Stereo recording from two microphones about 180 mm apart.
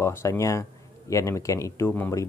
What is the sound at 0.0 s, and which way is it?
Speech, 15° left (ahead or behind).